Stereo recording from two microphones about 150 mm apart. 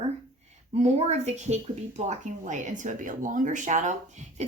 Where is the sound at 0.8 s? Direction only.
45° right (ahead or behind).